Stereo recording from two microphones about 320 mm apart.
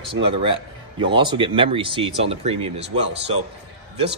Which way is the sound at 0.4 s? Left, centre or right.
Centre.